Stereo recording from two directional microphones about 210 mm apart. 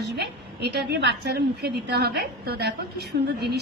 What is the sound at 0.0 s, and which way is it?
A woman's voice, 50° right (ahead or behind).